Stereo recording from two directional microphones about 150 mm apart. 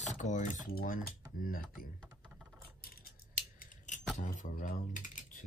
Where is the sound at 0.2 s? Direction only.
55° left (ahead or behind).